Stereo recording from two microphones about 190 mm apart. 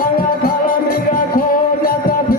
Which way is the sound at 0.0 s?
50° left (ahead or behind).